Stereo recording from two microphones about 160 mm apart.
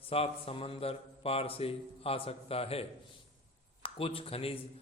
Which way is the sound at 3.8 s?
35° left (ahead or behind).